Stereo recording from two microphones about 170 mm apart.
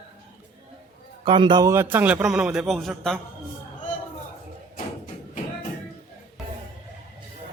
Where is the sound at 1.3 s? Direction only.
30° right (ahead or behind); by 3.1 s centre (ahead or behind).